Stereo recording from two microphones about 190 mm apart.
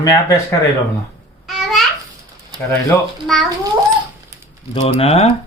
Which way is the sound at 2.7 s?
5° left (ahead or behind).